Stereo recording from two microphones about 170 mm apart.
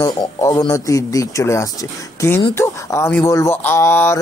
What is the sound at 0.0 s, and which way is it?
Speech, 20° left (ahead or behind).